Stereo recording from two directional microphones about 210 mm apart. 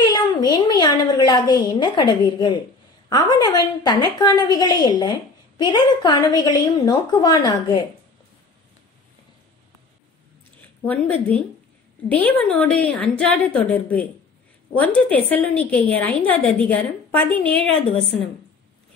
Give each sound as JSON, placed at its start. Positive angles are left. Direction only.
{"t": 0.1, "sound": "a sound", "side_deg": 15}
{"t": 3.1, "sound": "a woman's voice", "side_deg": 20}
{"t": 10.8, "sound": "a woman's voice", "side_deg": 10}